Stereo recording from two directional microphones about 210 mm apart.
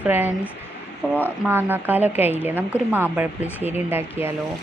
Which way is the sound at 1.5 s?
10° right (ahead or behind).